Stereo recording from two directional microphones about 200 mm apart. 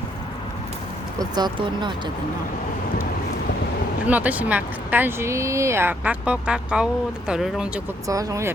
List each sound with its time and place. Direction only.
1.2 s speech: 20° right (ahead or behind)
4.0 s speech: 10° right (ahead or behind)
8.0 s speech: 15° right (ahead or behind)